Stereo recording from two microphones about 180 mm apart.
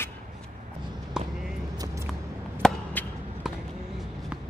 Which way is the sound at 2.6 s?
10° left (ahead or behind).